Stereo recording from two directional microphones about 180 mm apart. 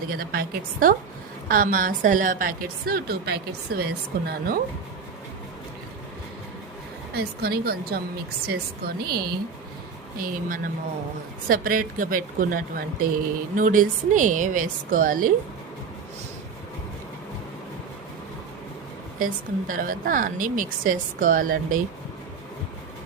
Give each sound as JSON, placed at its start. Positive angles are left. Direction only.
{"t": 0.1, "sound": "a woman's voice", "side_deg": -55}
{"t": 7.1, "sound": "a woman's voice", "side_deg": -60}
{"t": 19.2, "sound": "a woman's voice", "side_deg": -50}